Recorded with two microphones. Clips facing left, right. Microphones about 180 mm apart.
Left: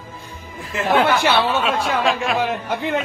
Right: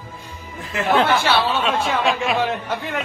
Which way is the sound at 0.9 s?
10° left (ahead or behind).